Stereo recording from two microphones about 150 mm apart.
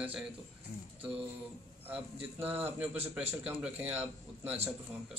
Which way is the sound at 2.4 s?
10° right (ahead or behind).